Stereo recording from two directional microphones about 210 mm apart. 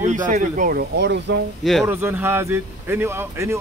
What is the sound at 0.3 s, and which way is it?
Speech, 40° right (ahead or behind).